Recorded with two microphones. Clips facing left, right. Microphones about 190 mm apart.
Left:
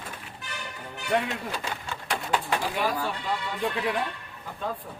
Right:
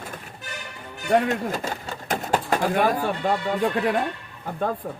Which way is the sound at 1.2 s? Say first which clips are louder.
Right 7 dB; 45° right (ahead or behind).